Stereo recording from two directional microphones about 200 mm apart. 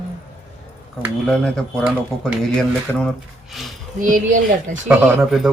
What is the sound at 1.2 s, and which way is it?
Speech, centre (ahead or behind).